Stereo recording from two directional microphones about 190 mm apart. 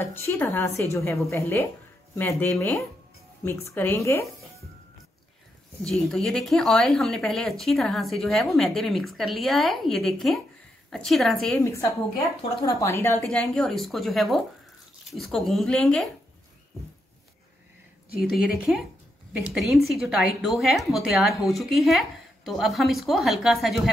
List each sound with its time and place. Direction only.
0.0 s a woman's voice: 15° left (ahead or behind)
5.9 s speech: centre (ahead or behind)
11.6 s a woman's voice: 15° left (ahead or behind)
13.2 s speech: centre (ahead or behind)
18.3 s speech: centre (ahead or behind)